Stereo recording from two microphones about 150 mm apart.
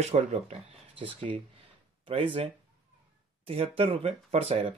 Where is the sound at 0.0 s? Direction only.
45° right (ahead or behind).